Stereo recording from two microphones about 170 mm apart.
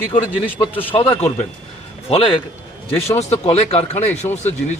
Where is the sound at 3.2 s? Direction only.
40° left (ahead or behind).